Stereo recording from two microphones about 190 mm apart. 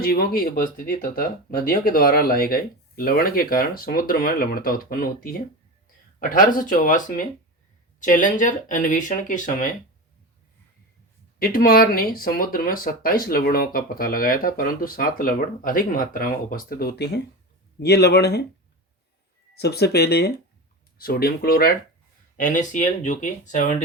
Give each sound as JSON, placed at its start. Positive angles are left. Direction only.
{"t": 0.0, "sound": "speech", "side_deg": 50}
{"t": 11.3, "sound": "speech", "side_deg": 50}
{"t": 19.5, "sound": "speech", "side_deg": 60}